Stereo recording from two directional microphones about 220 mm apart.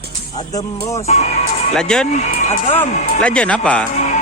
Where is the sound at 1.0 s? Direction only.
30° left (ahead or behind).